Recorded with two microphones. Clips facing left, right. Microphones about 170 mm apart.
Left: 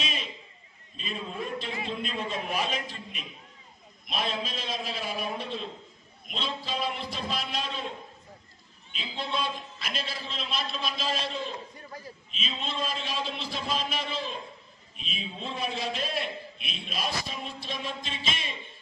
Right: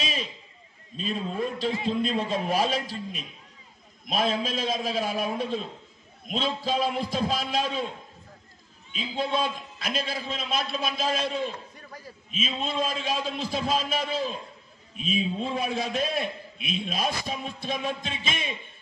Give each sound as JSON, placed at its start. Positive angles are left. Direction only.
{"t": 0.0, "sound": "a sound", "side_deg": -40}
{"t": 0.9, "sound": "a man's voice", "side_deg": -40}
{"t": 8.9, "sound": "a man's voice", "side_deg": -45}
{"t": 15.3, "sound": "a man's voice", "side_deg": -45}